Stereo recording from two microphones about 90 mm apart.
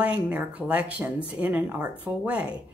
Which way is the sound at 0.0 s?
15° right (ahead or behind).